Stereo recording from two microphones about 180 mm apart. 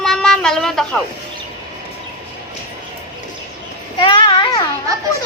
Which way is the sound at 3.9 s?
30° left (ahead or behind).